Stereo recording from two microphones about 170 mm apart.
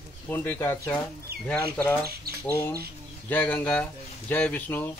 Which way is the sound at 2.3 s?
65° right (ahead or behind).